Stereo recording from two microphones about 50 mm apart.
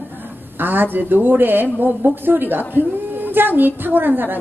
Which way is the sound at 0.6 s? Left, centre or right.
Right.